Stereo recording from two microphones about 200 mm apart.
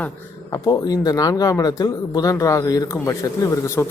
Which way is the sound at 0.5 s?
20° left (ahead or behind).